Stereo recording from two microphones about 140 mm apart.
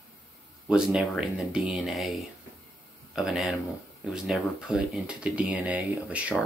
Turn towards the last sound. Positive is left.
turn(degrees=-10)  # may be behind; listen again after turning